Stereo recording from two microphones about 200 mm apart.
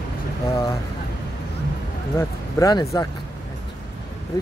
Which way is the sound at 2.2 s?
15° left (ahead or behind).